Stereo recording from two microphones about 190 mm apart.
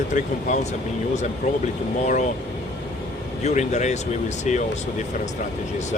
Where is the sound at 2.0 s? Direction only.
40° left (ahead or behind).